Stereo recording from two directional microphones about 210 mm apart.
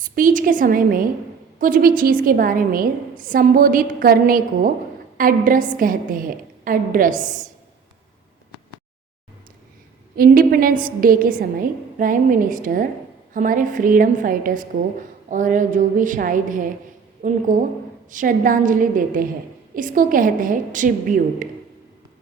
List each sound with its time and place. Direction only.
0.2 s a woman's voice: 40° right (ahead or behind)
10.2 s a woman's voice: 45° right (ahead or behind)